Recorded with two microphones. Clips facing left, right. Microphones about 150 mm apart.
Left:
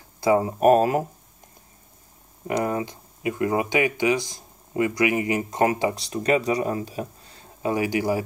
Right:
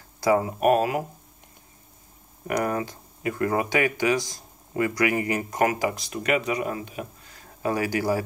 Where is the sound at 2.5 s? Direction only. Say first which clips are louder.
Left 1 dB; 20° left (ahead or behind).